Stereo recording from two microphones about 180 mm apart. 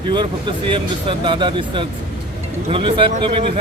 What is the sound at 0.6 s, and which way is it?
A man's voice, 30° right (ahead or behind).